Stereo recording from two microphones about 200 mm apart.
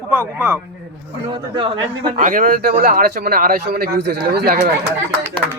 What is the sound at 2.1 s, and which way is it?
A man's voice, 45° right (ahead or behind).